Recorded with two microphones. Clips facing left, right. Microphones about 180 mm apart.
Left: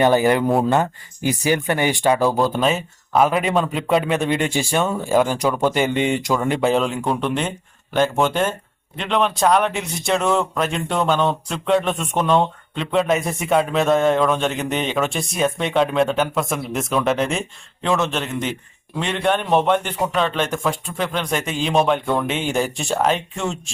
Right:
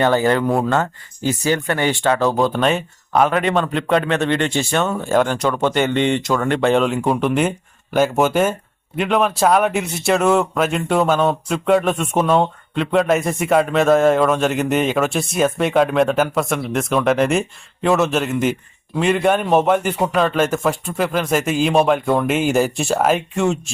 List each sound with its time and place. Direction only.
0.0 s speech: 15° left (ahead or behind); by 23.7 s 5° right (ahead or behind)